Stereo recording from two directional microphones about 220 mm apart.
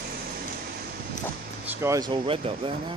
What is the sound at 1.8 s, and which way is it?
Speech, 20° right (ahead or behind).